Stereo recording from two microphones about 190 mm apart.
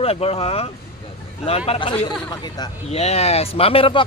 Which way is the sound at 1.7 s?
25° left (ahead or behind).